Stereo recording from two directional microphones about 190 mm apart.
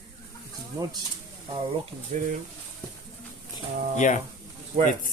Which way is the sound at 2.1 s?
35° right (ahead or behind).